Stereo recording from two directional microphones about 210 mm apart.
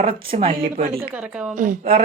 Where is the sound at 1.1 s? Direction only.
5° right (ahead or behind).